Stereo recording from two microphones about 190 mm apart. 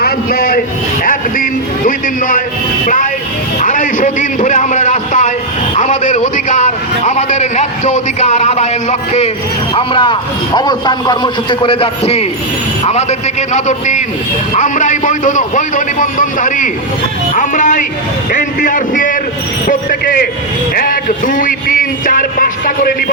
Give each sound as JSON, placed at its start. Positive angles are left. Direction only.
{"t": 0.0, "sound": "a man's voice", "side_deg": 50}